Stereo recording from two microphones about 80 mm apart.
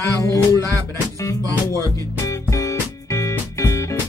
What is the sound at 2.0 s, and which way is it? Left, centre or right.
Speech, left.